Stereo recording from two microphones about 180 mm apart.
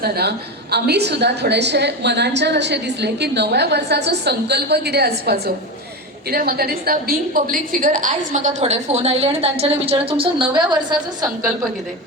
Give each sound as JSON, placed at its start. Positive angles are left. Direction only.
{"t": 0.0, "sound": "a woman's voice", "side_deg": -60}